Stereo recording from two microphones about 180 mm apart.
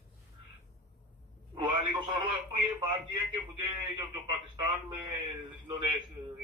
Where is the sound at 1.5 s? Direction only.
25° right (ahead or behind).